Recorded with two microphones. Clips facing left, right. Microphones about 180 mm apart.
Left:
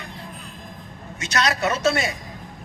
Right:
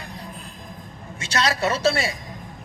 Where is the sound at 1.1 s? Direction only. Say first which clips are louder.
Even; 30° right (ahead or behind).